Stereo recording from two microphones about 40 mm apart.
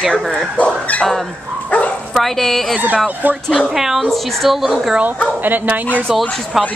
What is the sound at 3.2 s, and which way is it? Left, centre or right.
Speech, right.